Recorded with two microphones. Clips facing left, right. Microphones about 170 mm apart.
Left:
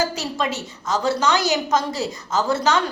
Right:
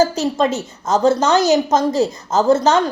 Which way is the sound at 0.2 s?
45° right (ahead or behind).